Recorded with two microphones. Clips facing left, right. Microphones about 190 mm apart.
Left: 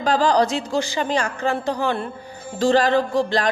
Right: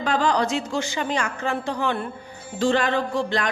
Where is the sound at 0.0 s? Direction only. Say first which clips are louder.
Left 4 dB; 35° left (ahead or behind).